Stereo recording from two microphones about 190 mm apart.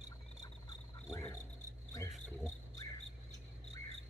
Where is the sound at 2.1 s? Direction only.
Centre (ahead or behind).